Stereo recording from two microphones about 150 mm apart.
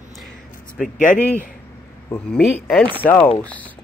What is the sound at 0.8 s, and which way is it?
Speech, centre (ahead or behind).